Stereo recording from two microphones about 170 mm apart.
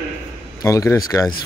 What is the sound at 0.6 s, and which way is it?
Speech, 20° left (ahead or behind).